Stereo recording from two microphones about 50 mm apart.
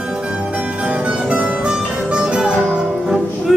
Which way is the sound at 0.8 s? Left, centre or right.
Right.